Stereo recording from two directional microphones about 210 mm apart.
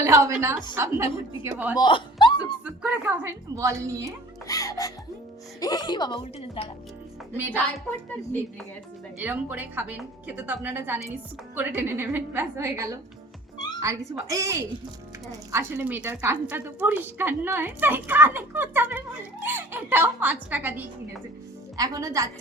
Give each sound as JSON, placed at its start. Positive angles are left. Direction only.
{"t": 0.0, "sound": "a woman's voice", "side_deg": -15}
{"t": 1.7, "sound": "a sound", "side_deg": 20}
{"t": 2.6, "sound": "a woman's voice", "side_deg": -5}
{"t": 4.4, "sound": "music", "side_deg": 15}
{"t": 5.5, "sound": "a woman's voice", "side_deg": 20}
{"t": 9.1, "sound": "a woman's voice", "side_deg": -10}